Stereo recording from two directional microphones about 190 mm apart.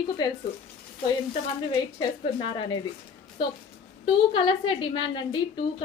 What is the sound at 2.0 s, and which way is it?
Speech, 25° left (ahead or behind).